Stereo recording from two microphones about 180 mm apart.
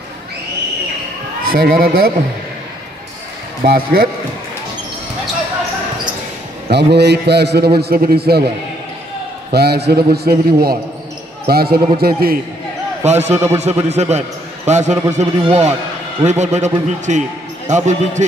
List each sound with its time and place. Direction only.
1.5 s a man's voice: 55° right (ahead or behind)
3.7 s a man's voice: 55° right (ahead or behind)
6.7 s a man's voice: 65° right (ahead or behind)
9.5 s a man's voice: 65° right (ahead or behind)
13.0 s a man's voice: 40° right (ahead or behind)